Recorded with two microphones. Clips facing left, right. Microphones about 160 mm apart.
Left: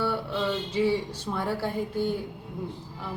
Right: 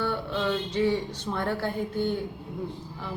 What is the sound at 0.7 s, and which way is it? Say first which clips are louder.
A woman's voice: even; 5° left (ahead or behind).